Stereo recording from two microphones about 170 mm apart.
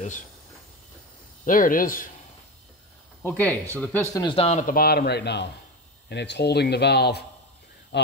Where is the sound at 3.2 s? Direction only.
10° left (ahead or behind).